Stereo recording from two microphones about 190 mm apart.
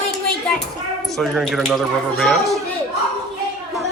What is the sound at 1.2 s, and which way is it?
Speech, centre (ahead or behind).